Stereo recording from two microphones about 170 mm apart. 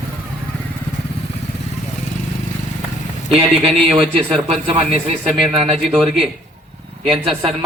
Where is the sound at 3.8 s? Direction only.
35° right (ahead or behind).